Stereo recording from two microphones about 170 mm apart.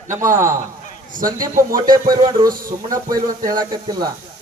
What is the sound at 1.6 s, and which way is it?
Speech, 55° right (ahead or behind).